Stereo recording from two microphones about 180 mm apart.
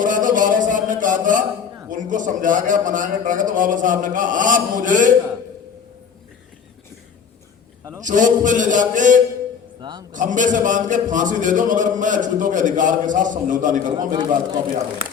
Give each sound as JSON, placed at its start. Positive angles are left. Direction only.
{"t": 0.0, "sound": "music", "side_deg": -45}
{"t": 1.9, "sound": "a man's voice", "side_deg": -45}
{"t": 8.0, "sound": "a man's voice", "side_deg": -45}